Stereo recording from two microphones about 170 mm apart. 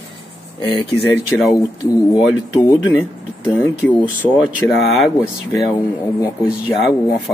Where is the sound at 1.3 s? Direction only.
5° left (ahead or behind).